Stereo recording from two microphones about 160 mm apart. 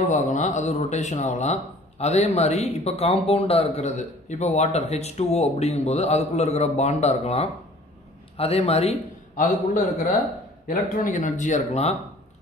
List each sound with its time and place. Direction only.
0.0 s a man's voice: 50° left (ahead or behind)
9.3 s a man's voice: 60° left (ahead or behind)